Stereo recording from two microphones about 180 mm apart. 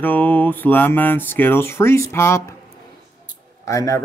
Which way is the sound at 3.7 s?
20° left (ahead or behind).